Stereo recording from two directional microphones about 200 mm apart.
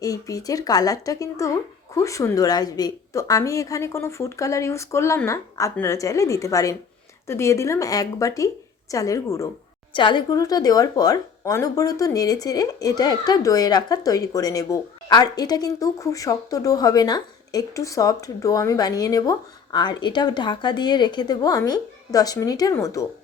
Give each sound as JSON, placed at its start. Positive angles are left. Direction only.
{"t": 0.0, "sound": "speech", "side_deg": 15}